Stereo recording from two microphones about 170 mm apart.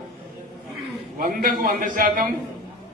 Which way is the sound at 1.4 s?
55° right (ahead or behind).